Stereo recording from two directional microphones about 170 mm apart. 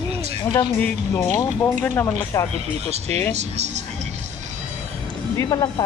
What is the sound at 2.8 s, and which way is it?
Speech, 40° right (ahead or behind).